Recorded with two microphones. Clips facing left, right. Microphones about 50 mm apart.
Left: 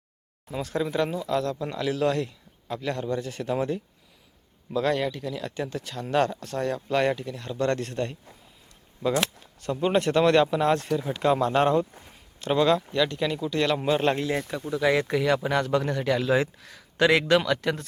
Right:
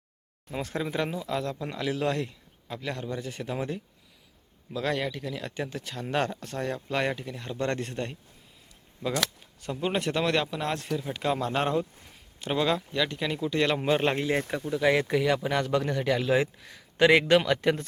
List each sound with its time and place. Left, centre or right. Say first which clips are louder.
0.8 s a man's voice: left 5 dB; centre
9.6 s a man's voice: left 5 dB; centre; by 17.8 s right